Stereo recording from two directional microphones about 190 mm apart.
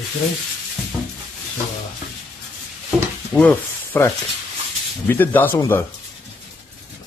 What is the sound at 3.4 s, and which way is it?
Speech, 10° left (ahead or behind).